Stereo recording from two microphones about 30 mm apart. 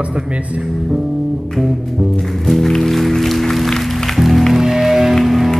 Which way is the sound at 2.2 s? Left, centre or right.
Centre.